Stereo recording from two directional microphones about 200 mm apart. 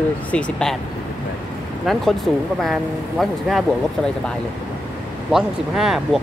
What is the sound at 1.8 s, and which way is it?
Speech, centre (ahead or behind).